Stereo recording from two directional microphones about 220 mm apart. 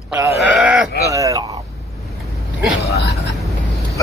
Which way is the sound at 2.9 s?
50° left (ahead or behind).